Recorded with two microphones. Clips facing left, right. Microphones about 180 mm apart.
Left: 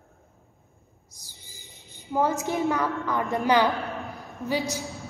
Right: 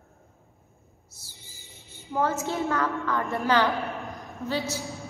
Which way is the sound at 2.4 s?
15° left (ahead or behind).